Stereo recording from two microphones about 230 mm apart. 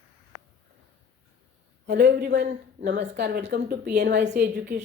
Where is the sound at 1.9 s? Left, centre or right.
Right.